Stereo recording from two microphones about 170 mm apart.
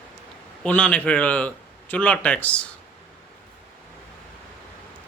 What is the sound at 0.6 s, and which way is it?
Speech, 10° left (ahead or behind).